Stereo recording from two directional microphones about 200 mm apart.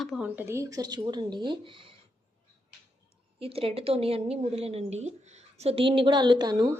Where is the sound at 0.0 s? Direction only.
5° right (ahead or behind); by 2.0 s 25° right (ahead or behind).